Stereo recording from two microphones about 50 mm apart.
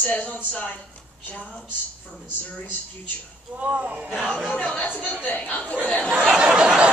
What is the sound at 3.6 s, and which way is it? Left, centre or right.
Speech, right.